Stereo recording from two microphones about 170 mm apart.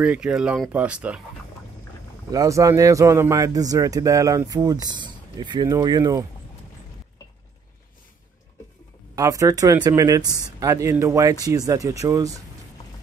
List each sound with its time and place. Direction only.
0.0 s speech: 5° right (ahead or behind)
2.3 s speech: 20° right (ahead or behind)
9.1 s speech: 20° right (ahead or behind)